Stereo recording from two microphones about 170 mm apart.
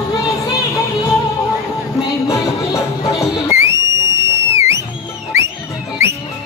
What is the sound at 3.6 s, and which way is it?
Whistle, 15° right (ahead or behind).